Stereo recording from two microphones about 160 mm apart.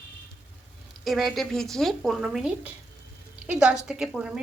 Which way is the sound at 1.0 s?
Centre (ahead or behind).